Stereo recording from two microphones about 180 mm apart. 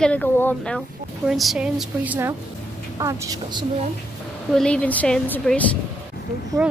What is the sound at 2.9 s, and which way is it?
Speech, 20° right (ahead or behind).